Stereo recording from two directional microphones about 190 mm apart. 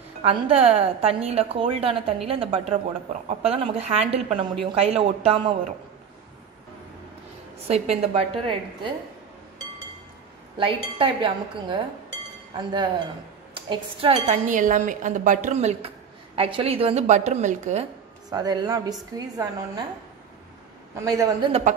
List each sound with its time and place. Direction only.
0.2 s a woman's voice: 30° right (ahead or behind)
7.6 s a woman's voice: 30° right (ahead or behind)
10.6 s a woman's voice: 25° right (ahead or behind)
18.3 s a woman's voice: 20° right (ahead or behind)
20.9 s a man's voice: 15° right (ahead or behind)
21.5 s a woman's voice: 35° right (ahead or behind)